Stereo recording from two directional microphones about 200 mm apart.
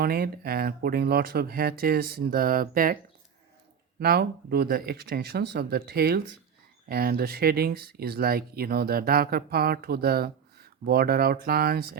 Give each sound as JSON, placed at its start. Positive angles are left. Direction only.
{"t": 0.0, "sound": "speech", "side_deg": -50}
{"t": 4.0, "sound": "speech", "side_deg": -50}